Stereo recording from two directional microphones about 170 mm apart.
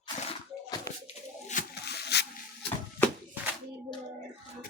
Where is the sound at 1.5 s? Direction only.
50° left (ahead or behind).